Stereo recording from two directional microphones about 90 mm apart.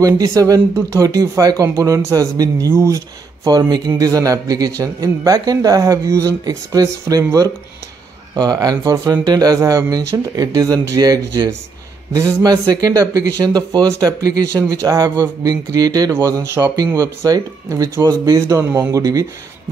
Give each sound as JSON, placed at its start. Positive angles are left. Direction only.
{"t": 0.0, "sound": "a man's voice", "side_deg": -40}
{"t": 2.7, "sound": "a man's voice", "side_deg": -30}
{"t": 3.4, "sound": "a man's voice", "side_deg": -45}